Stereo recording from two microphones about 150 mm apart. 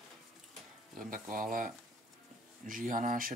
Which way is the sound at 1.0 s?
65° right (ahead or behind).